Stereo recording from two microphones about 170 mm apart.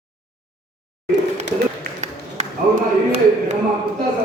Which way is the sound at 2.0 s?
40° right (ahead or behind).